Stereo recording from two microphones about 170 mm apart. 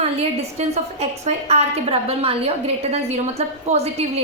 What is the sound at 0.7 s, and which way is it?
A woman's voice, 40° right (ahead or behind).